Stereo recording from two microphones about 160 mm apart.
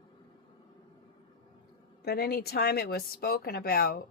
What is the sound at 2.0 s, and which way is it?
A woman's voice, 75° left (ahead or behind).